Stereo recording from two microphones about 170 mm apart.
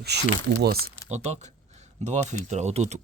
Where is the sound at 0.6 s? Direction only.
65° right (ahead or behind).